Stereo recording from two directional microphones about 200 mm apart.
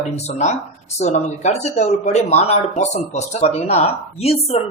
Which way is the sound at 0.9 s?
35° left (ahead or behind).